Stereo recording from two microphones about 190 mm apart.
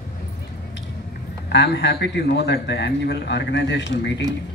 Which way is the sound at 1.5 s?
65° left (ahead or behind).